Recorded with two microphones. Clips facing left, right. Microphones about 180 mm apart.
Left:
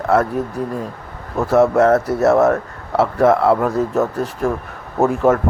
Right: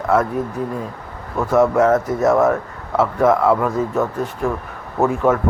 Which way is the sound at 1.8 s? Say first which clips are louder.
Left 2 dB; 70° left (ahead or behind).